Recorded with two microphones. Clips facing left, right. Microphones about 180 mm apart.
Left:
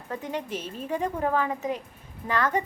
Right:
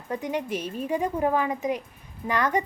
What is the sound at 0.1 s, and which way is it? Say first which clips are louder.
A woman's voice: right 3 dB; 15° right (ahead or behind).